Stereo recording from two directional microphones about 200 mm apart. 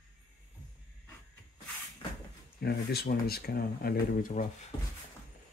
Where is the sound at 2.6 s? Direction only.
55° left (ahead or behind).